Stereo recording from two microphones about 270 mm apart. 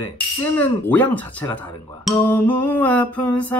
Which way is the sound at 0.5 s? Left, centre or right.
Centre.